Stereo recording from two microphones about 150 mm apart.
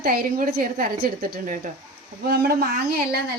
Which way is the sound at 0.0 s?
75° right (ahead or behind).